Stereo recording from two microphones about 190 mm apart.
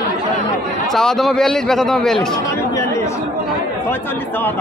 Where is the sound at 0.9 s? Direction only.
Centre (ahead or behind).